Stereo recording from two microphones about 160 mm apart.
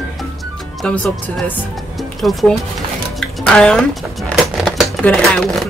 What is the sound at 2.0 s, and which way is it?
Music, centre (ahead or behind).